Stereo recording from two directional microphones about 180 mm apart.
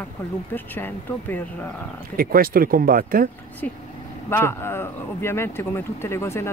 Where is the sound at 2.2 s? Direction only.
55° right (ahead or behind).